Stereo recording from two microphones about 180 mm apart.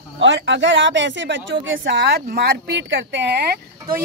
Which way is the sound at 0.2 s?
85° right.